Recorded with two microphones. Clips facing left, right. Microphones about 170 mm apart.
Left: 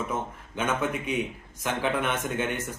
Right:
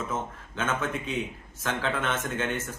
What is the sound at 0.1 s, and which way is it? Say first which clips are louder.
Speech: left 1 dB; 15° left (ahead or behind).